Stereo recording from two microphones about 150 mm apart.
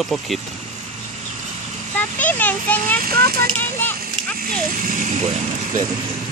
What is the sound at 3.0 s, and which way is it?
Speech, 80° right.